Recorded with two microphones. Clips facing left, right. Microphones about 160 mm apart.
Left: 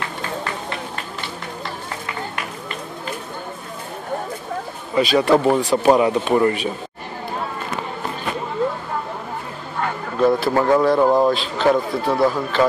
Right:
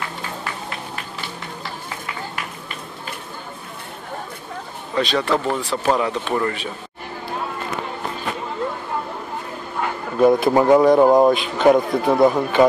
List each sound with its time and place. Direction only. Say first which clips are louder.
4.9 s speech: left 5 dB; 10° left (ahead or behind)
9.8 s speech: right 2 dB; 10° right (ahead or behind)